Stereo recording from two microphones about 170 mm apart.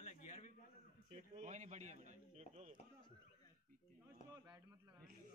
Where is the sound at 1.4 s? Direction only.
45° right (ahead or behind).